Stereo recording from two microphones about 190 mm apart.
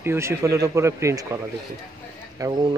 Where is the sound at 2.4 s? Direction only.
20° right (ahead or behind).